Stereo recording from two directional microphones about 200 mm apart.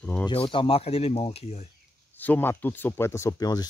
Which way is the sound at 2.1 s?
10° left (ahead or behind).